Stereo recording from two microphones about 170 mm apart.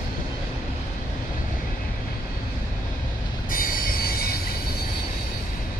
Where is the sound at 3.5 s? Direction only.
55° left (ahead or behind).